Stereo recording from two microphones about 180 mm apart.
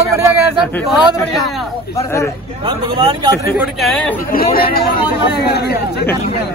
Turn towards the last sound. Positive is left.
turn(degrees=65)  # may be behind; listen again after turning